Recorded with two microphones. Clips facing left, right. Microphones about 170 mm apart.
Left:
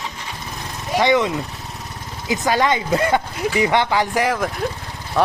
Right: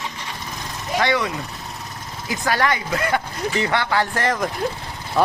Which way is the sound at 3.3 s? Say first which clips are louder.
Left 4 dB; 10° left (ahead or behind).